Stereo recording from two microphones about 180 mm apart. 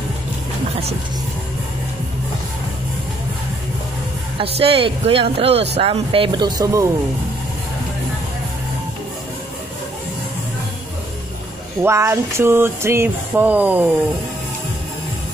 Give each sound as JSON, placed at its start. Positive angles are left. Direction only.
{"t": 4.4, "sound": "speech", "side_deg": -30}
{"t": 11.8, "sound": "speech", "side_deg": -15}